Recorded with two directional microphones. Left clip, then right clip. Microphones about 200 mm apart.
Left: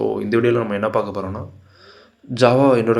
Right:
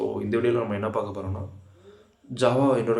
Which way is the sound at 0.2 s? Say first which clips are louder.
Left 4 dB; 35° left (ahead or behind).